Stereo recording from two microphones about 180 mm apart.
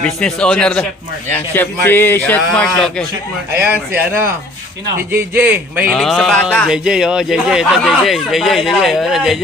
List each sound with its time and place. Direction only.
0.0 s speech: 5° left (ahead or behind)
3.6 s speech: 10° right (ahead or behind)
5.1 s speech: 10° right (ahead or behind)